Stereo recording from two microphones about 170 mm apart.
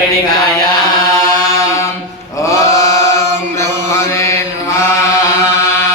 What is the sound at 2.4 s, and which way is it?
Mantra, 20° left (ahead or behind).